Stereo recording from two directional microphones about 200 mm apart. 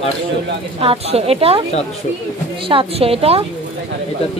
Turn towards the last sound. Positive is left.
turn(degrees=-30)  # may be behind; listen again after turning